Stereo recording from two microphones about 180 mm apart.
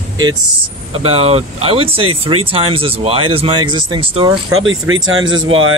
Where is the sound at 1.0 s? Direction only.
35° right (ahead or behind).